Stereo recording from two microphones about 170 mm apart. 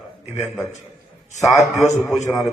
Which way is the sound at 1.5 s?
40° left (ahead or behind).